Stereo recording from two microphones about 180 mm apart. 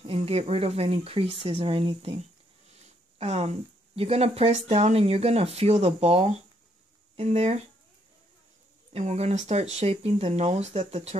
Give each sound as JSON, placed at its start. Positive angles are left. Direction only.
{"t": 0.0, "sound": "speech", "side_deg": -30}
{"t": 8.9, "sound": "speech", "side_deg": -35}